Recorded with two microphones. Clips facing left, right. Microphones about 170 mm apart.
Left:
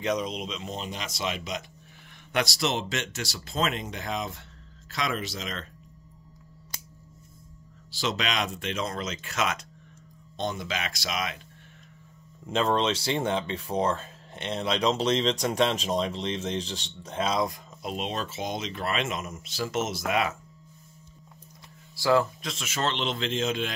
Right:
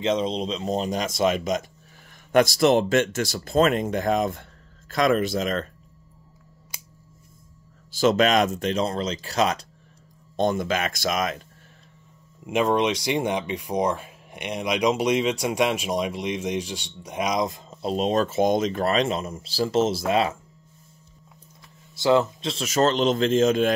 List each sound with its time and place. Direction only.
0.0 s speech: 25° right (ahead or behind); by 5.7 s 50° right (ahead or behind)
7.9 s speech: 50° right (ahead or behind)
10.3 s speech: 50° right (ahead or behind)
12.4 s speech: 15° right (ahead or behind); by 20.3 s 30° right (ahead or behind)
21.9 s speech: 20° right (ahead or behind); by 23.7 s 45° right (ahead or behind)